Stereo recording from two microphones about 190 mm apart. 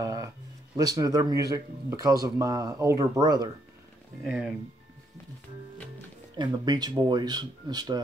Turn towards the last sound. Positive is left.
turn(degrees=-20)  # may be behind; listen again after turning